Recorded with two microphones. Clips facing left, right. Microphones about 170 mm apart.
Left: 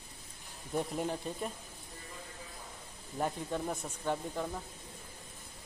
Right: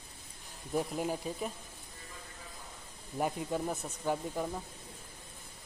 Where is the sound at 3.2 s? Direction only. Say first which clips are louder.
Right 2 dB; 10° right (ahead or behind).